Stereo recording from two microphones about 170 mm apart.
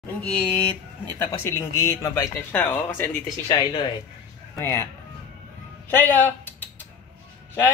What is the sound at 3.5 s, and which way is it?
Speech, 30° left (ahead or behind).